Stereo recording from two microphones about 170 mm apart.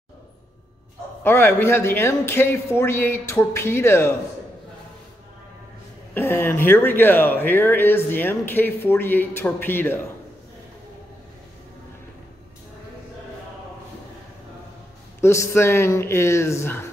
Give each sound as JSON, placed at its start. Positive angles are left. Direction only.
{"t": 1.2, "sound": "speech", "side_deg": 15}
{"t": 6.1, "sound": "speech", "side_deg": 15}
{"t": 15.1, "sound": "speech", "side_deg": 15}